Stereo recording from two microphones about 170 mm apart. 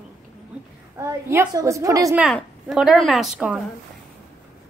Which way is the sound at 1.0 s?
15° right (ahead or behind).